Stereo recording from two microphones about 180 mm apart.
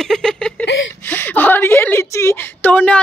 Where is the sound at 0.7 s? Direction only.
90° left.